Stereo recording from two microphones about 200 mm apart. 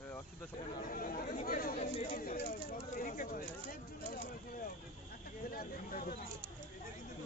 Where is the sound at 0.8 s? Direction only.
45° left (ahead or behind).